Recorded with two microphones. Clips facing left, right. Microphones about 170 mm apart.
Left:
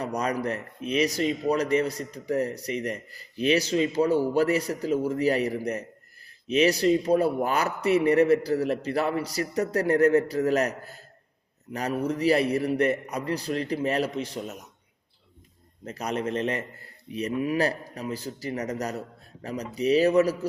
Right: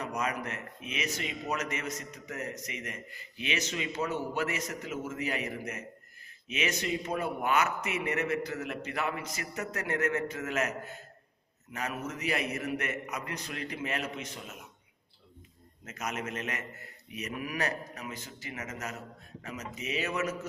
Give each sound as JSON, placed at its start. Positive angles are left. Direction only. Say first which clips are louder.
{"t": 0.0, "sound": "a man's voice", "louder": "left 6 dB", "side_deg": 35}
{"t": 15.9, "sound": "a man's voice", "louder": "left 8 dB", "side_deg": 35}